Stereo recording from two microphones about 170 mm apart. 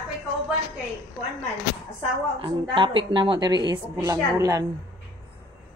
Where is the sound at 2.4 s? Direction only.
30° right (ahead or behind).